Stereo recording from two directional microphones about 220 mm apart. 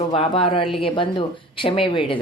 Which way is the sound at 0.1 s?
25° left (ahead or behind).